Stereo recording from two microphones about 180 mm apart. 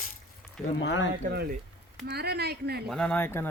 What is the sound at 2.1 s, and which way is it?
Speech, 65° right (ahead or behind).